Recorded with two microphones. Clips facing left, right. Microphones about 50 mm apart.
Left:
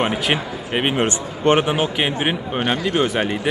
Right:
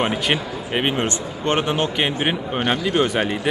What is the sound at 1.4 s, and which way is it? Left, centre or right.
A man's voice, centre.